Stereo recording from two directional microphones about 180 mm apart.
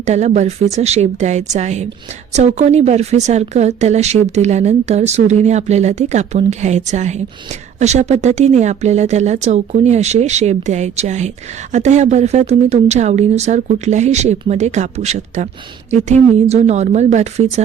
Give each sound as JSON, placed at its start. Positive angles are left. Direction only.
{"t": 0.0, "sound": "speech", "side_deg": -40}